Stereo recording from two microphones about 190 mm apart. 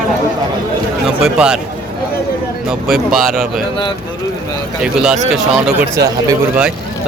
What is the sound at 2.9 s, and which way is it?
Speech, centre (ahead or behind).